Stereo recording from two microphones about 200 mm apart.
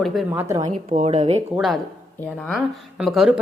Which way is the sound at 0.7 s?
35° right (ahead or behind).